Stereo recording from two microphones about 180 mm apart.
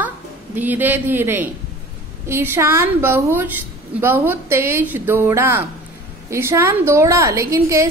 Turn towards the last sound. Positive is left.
turn(degrees=-15)  # may be behind; listen again after turning